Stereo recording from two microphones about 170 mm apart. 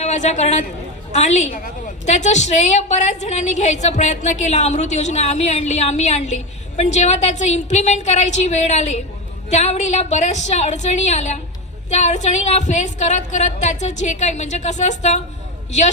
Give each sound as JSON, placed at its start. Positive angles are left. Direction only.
{"t": 0.0, "sound": "a woman's voice", "side_deg": 45}